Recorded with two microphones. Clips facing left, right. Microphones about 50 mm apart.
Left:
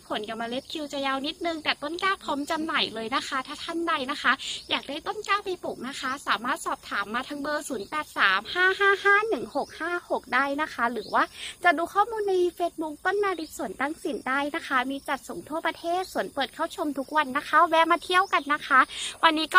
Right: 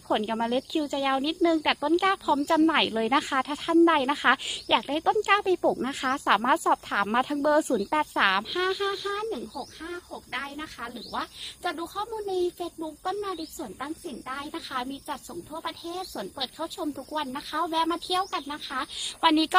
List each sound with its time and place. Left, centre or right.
0.1 s speech: centre
2.7 s speech: right; by 5.0 s centre
5.0 s speech: right
5.8 s speech: right
8.1 s speech: centre
8.7 s speech: left
9.0 s speech: left
9.8 s speech: left
12.8 s speech: left
13.7 s speech: left
16.3 s speech: left
19.2 s a woman's voice: centre